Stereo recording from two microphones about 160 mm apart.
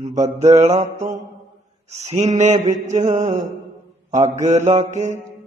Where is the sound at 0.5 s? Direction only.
45° right (ahead or behind).